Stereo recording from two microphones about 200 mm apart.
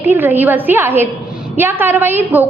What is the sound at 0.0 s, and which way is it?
A woman's voice, 10° right (ahead or behind).